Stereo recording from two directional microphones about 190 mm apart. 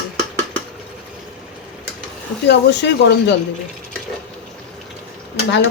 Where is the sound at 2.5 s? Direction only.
65° left (ahead or behind).